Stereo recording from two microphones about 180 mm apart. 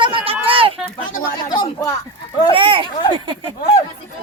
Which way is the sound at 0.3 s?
30° right (ahead or behind).